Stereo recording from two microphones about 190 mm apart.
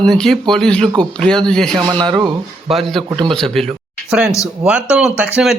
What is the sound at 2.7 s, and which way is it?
Speech, centre (ahead or behind).